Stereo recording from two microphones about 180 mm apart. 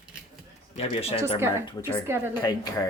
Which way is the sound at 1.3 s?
15° right (ahead or behind).